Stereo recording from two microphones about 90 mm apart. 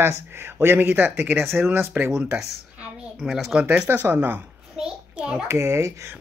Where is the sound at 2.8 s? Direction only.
15° right (ahead or behind).